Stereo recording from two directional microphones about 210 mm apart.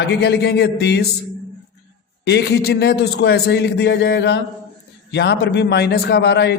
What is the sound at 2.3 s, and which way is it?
A man's voice, 50° left (ahead or behind).